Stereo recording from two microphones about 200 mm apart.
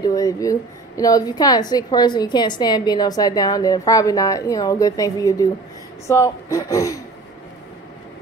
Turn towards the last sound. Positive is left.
turn(degrees=15)  # may be behind; listen again after turning